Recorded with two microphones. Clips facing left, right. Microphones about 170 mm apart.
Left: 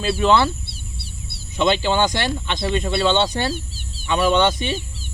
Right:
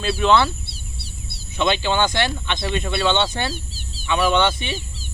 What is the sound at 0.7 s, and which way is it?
Bird, 55° left (ahead or behind).